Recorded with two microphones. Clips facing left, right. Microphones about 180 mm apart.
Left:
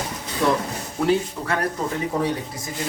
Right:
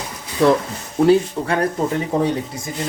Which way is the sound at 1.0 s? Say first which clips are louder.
Right 7 dB; 30° right (ahead or behind).